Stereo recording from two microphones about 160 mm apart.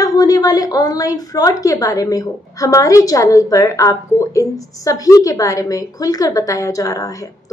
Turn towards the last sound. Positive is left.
turn(degrees=20)  # may be behind; listen again after turning